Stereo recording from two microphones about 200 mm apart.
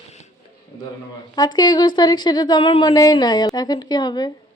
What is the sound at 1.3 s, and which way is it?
A woman's voice, 20° left (ahead or behind).